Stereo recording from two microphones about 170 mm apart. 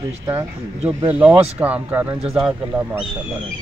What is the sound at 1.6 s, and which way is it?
Speech, 10° right (ahead or behind).